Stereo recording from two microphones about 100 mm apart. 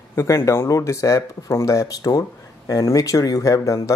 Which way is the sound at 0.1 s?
25° left (ahead or behind).